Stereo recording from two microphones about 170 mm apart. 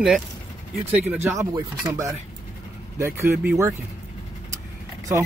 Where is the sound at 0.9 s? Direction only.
10° right (ahead or behind).